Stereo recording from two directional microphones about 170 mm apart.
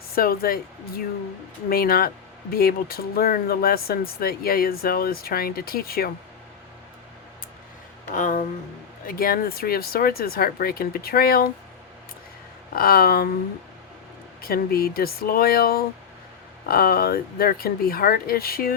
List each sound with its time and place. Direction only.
0.2 s speech: 60° left (ahead or behind)
8.1 s speech: 50° left (ahead or behind)
12.7 s speech: 60° left (ahead or behind)
14.4 s speech: 65° left (ahead or behind)